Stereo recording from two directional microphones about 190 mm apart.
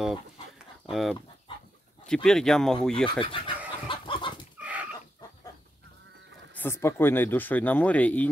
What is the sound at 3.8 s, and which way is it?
Chicken, 25° left (ahead or behind).